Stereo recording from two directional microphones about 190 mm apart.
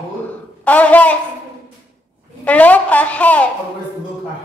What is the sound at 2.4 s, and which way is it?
A man's voice, 5° left (ahead or behind).